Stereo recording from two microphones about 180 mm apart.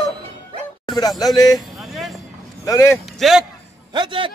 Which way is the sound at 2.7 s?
15° left (ahead or behind).